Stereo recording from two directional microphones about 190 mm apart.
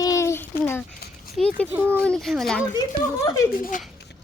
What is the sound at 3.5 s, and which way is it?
Speech, 50° left (ahead or behind).